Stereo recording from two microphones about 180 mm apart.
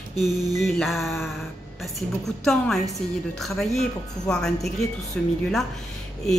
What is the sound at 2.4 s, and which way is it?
A woman's voice, centre (ahead or behind).